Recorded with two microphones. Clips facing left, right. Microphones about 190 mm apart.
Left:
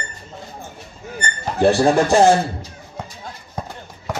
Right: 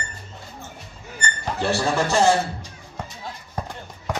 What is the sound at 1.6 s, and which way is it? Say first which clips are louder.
Speech: left 8 dB; 55° left (ahead or behind).